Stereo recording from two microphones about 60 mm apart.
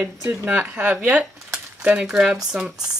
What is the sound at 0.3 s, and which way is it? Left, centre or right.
Speech, right.